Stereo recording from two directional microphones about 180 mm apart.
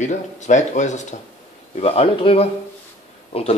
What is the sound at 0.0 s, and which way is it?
Speech, 40° left (ahead or behind).